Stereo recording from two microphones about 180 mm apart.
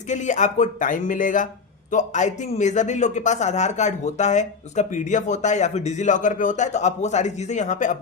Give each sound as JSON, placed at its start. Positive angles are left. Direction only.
{"t": 0.1, "sound": "a man's voice", "side_deg": 40}